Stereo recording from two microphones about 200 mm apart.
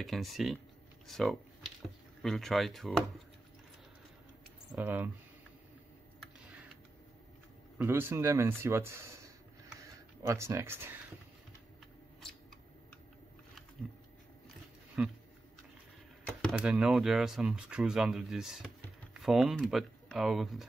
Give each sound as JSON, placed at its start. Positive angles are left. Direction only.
{"t": 0.0, "sound": "speech", "side_deg": 0}
{"t": 4.7, "sound": "speech", "side_deg": -10}
{"t": 7.7, "sound": "speech", "side_deg": -10}
{"t": 10.2, "sound": "speech", "side_deg": -15}
{"t": 15.0, "sound": "speech", "side_deg": -5}
{"t": 16.5, "sound": "speech", "side_deg": -5}